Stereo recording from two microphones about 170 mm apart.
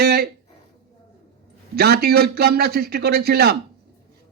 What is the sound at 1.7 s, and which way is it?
Speech, 70° right (ahead or behind).